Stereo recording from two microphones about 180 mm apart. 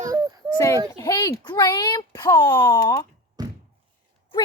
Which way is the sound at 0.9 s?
20° left (ahead or behind).